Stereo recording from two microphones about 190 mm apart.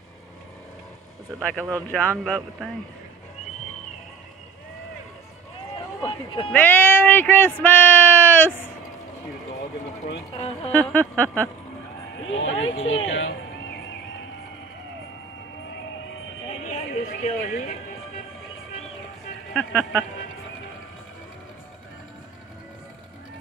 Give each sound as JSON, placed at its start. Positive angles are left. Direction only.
{"t": 1.6, "sound": "speech", "side_deg": -15}
{"t": 1.9, "sound": "speech", "side_deg": 5}
{"t": 6.0, "sound": "speech", "side_deg": 25}
{"t": 6.5, "sound": "speech", "side_deg": 10}
{"t": 10.3, "sound": "speech", "side_deg": 30}
{"t": 10.7, "sound": "speech", "side_deg": 10}
{"t": 12.3, "sound": "speech", "side_deg": 90}
{"t": 16.4, "sound": "a sound", "side_deg": 35}
{"t": 19.5, "sound": "speech", "side_deg": 5}